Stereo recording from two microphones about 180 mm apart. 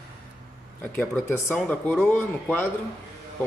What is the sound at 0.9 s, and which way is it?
A man's voice, 10° left (ahead or behind).